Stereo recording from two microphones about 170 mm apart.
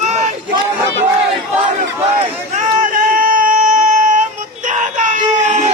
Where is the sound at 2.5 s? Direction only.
50° right (ahead or behind).